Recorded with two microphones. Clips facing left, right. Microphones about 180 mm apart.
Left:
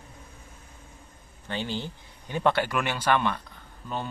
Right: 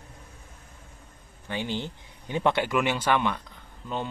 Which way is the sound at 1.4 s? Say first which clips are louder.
Right 1 dB; 15° right (ahead or behind).